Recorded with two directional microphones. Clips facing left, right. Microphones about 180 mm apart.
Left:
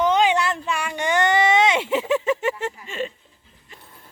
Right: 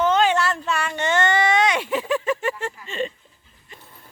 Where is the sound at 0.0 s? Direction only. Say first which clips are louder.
Even; 15° left (ahead or behind).